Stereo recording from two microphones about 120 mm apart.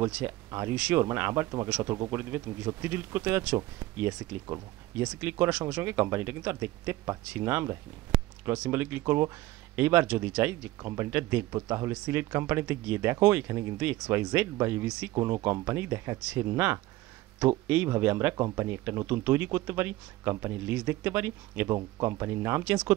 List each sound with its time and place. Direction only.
0.0 s speech: 20° right (ahead or behind)
15.1 s speech: 25° right (ahead or behind)